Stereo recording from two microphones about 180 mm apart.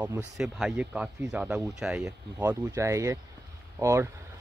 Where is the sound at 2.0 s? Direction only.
15° right (ahead or behind).